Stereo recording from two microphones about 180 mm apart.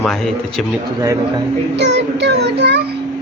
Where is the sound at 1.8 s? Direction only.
75° right (ahead or behind).